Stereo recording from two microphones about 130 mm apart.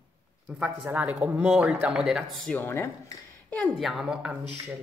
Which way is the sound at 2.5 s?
20° left (ahead or behind).